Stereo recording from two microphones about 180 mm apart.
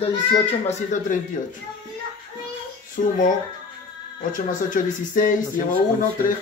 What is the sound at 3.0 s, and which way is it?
Speech, 45° left (ahead or behind).